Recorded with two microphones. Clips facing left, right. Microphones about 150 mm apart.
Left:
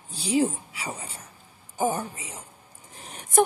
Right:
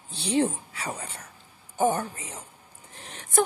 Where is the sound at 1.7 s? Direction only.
10° left (ahead or behind).